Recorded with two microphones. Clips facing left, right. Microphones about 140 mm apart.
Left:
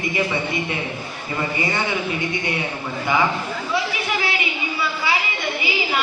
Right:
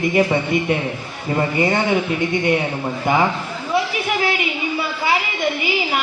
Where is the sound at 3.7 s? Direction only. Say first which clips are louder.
Right 4 dB; 50° right (ahead or behind).